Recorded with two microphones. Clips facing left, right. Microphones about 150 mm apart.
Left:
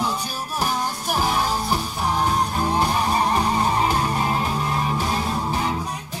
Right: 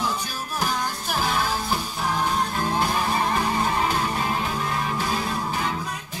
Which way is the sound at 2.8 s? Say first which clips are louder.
Left 3 dB; 35° left (ahead or behind).